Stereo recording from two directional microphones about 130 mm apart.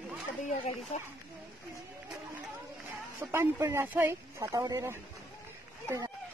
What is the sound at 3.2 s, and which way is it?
Speech, 20° right (ahead or behind).